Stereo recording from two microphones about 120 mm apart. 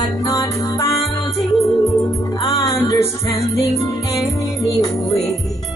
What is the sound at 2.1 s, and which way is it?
Music, 30° left (ahead or behind).